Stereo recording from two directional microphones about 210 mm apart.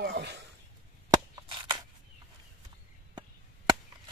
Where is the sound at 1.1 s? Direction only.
20° right (ahead or behind).